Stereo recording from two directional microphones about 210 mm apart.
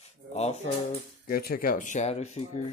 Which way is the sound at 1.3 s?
45° left (ahead or behind).